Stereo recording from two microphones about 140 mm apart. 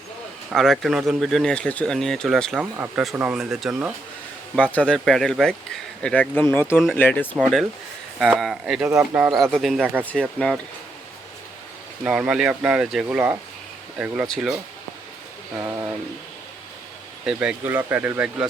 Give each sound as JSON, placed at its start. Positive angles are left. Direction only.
{"t": 0.5, "sound": "speech", "side_deg": 0}
{"t": 2.7, "sound": "speech", "side_deg": -15}
{"t": 3.3, "sound": "speech", "side_deg": -5}
{"t": 4.5, "sound": "speech", "side_deg": 10}
{"t": 7.3, "sound": "speech", "side_deg": 0}
{"t": 9.3, "sound": "speech", "side_deg": 0}
{"t": 9.8, "sound": "speech", "side_deg": -15}
{"t": 10.1, "sound": "speech", "side_deg": 10}
{"t": 12.0, "sound": "speech", "side_deg": -5}
{"t": 14.3, "sound": "speech", "side_deg": 0}
{"t": 17.2, "sound": "speech", "side_deg": -5}